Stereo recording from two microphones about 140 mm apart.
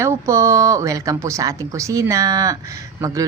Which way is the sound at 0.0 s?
20° right (ahead or behind).